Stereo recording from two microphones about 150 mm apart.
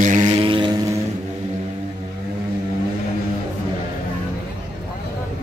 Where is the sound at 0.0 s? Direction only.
55° right (ahead or behind).